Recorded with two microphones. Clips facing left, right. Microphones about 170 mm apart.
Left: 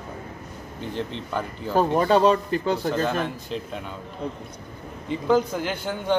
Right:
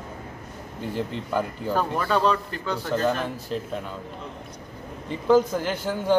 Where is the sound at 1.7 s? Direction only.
40° left (ahead or behind).